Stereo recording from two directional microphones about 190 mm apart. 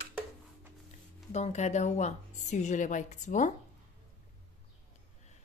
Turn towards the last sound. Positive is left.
turn(degrees=40)  # may be behind; listen again after turning